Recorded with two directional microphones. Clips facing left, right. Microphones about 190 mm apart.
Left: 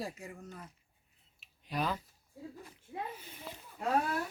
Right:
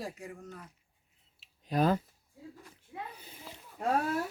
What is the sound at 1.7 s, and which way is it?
Speech, 45° right (ahead or behind).